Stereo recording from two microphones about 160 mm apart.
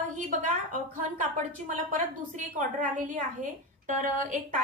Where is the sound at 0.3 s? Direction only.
55° right (ahead or behind).